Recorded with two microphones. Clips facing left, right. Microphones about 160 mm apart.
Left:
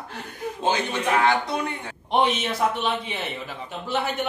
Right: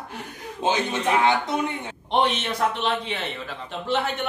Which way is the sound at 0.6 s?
20° right (ahead or behind).